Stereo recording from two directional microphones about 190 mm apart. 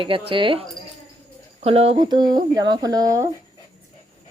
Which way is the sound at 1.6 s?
30° right (ahead or behind).